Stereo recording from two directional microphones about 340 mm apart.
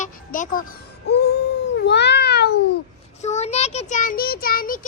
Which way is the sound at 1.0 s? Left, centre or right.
Left.